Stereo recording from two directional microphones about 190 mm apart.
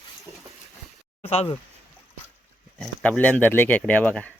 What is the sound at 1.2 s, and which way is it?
Speech, 30° left (ahead or behind).